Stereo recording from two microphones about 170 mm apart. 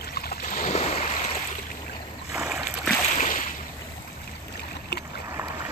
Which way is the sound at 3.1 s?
40° left (ahead or behind).